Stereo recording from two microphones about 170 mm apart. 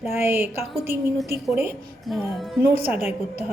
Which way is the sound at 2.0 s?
Centre (ahead or behind).